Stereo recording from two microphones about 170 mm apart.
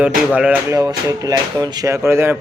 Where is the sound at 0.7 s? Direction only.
20° right (ahead or behind).